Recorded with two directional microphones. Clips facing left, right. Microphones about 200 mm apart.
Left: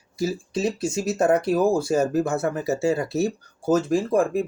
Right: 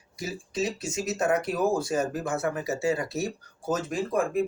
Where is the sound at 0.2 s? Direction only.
30° left (ahead or behind).